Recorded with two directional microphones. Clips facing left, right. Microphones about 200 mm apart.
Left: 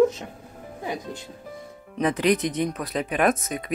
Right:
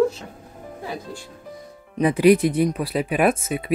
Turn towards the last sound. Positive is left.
turn(degrees=-10)  # may be behind; listen again after turning